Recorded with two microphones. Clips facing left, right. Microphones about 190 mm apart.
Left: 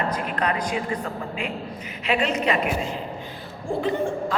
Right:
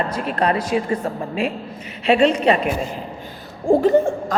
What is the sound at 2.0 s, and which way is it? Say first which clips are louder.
Speech: right 8 dB; 30° right (ahead or behind).